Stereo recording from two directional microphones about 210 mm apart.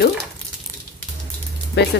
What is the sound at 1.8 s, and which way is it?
Speech, 55° left (ahead or behind).